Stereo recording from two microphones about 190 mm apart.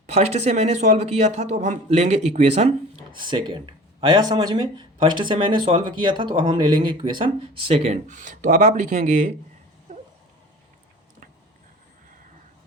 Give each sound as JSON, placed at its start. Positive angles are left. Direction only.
{"t": 0.1, "sound": "a man's voice", "side_deg": -35}
{"t": 7.7, "sound": "a man's voice", "side_deg": -40}